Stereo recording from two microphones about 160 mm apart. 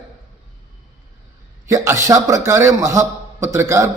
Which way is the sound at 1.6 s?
20° right (ahead or behind).